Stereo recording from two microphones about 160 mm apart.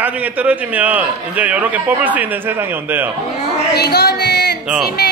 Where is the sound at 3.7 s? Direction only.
90° left.